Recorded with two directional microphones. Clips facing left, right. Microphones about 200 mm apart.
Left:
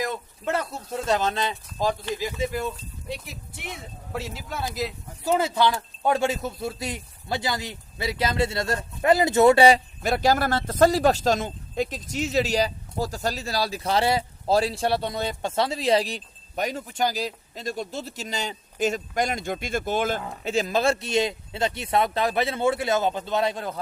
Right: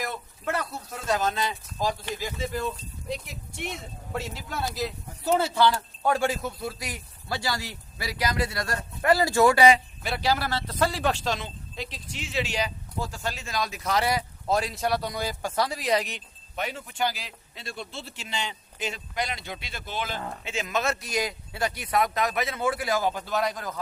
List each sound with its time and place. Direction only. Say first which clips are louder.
0.0 s speech: left 4 dB; 20° left (ahead or behind)
2.2 s speech: left 3 dB; 10° left (ahead or behind)
4.1 s speech: left 1 dB; centre (ahead or behind)
5.4 s speech: even; 15° left (ahead or behind); by 20.2 s 50° left (ahead or behind)
20.4 s speech: left 6 dB; 35° left (ahead or behind)